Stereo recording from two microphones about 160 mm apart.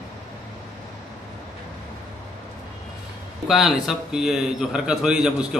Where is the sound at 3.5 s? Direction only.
Centre (ahead or behind).